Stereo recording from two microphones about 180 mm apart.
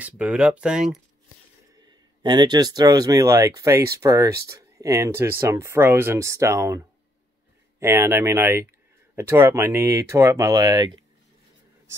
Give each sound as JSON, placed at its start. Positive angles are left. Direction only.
{"t": 0.0, "sound": "speech", "side_deg": -5}
{"t": 2.2, "sound": "speech", "side_deg": -25}